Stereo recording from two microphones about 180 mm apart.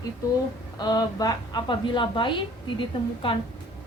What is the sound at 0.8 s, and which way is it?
A woman's voice, 20° left (ahead or behind).